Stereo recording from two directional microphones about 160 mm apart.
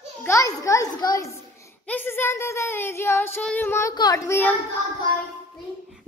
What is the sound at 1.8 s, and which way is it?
Child singing, 10° left (ahead or behind).